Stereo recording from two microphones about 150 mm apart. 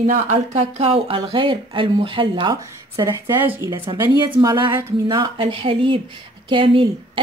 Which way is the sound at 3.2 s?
15° right (ahead or behind).